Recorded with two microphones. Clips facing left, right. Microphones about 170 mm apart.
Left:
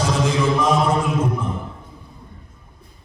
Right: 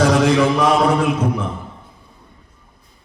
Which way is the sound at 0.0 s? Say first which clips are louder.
Right 6 dB; 70° right (ahead or behind).